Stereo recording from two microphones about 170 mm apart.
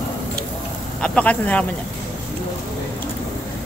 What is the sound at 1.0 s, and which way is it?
Speech, 5° left (ahead or behind).